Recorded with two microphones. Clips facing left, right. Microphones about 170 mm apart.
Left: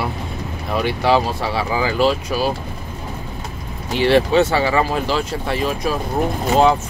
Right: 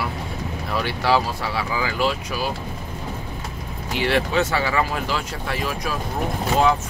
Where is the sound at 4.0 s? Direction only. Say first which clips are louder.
Left 7 dB; 30° left (ahead or behind).